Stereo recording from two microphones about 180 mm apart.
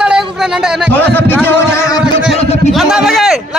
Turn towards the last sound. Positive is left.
turn(degrees=0)  # may be behind; listen again after turning